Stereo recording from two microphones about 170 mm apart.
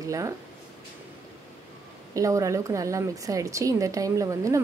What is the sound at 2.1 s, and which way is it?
A woman's voice, 20° right (ahead or behind).